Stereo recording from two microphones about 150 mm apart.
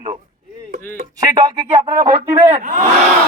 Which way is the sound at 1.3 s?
25° right (ahead or behind).